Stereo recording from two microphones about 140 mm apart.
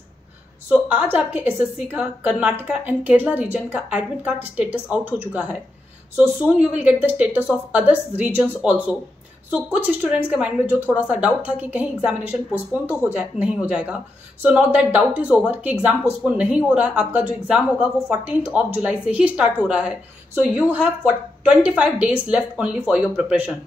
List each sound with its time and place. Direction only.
0.7 s a woman's voice: 10° right (ahead or behind)